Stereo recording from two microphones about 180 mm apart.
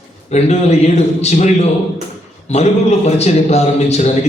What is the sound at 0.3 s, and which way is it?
A man's voice, 35° left (ahead or behind).